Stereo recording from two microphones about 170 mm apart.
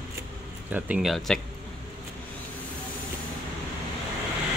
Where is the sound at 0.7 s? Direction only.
10° right (ahead or behind).